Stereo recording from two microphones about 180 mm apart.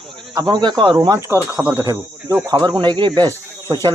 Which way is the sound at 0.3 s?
25° right (ahead or behind).